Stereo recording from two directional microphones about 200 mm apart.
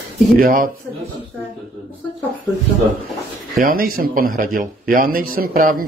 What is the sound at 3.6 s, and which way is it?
Speech, 45° right (ahead or behind).